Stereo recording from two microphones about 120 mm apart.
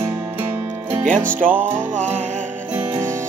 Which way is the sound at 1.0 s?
90° right.